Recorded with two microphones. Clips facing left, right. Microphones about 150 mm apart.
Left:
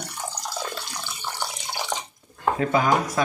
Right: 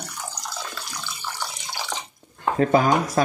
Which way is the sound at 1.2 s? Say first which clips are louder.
Left 2 dB; 20° left (ahead or behind).